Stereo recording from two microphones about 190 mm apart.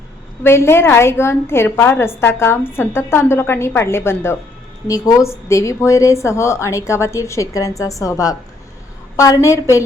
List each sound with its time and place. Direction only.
0.4 s a woman's voice: 15° left (ahead or behind)